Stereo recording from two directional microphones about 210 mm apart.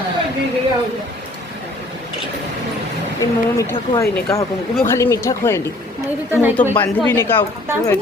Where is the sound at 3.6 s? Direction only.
15° left (ahead or behind).